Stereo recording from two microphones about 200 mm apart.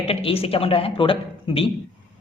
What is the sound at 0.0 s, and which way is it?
Speech, 30° left (ahead or behind).